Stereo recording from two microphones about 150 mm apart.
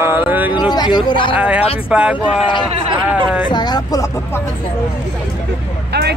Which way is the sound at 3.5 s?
30° left (ahead or behind).